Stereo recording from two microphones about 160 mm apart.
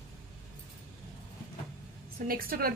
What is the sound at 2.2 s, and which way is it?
Speech, 65° right (ahead or behind).